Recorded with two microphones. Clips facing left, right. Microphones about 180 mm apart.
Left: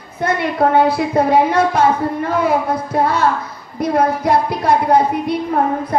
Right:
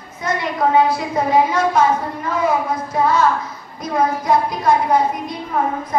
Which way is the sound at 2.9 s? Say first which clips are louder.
Even; 65° left (ahead or behind).